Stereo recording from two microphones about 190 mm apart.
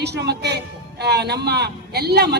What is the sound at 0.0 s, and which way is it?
Speech, 60° right (ahead or behind).